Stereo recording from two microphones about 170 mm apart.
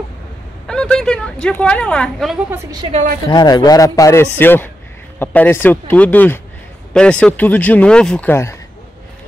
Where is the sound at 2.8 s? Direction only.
35° right (ahead or behind).